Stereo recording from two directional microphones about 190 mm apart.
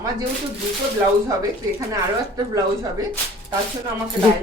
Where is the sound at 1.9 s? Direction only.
15° right (ahead or behind).